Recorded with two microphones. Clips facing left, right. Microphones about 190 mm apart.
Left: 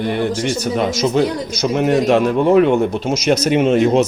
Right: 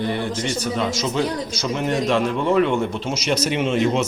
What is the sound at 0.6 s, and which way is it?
Speech, 40° left (ahead or behind).